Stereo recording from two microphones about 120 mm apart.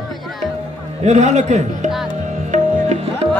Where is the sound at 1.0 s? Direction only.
75° right (ahead or behind).